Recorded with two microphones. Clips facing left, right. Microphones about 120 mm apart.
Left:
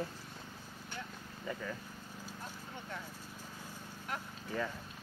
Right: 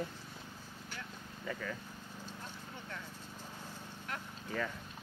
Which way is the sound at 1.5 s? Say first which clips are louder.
Even; 15° left (ahead or behind).